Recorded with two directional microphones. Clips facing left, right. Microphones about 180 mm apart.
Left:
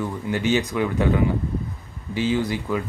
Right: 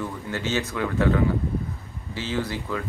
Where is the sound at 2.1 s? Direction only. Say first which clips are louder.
Left 6 dB; 15° left (ahead or behind).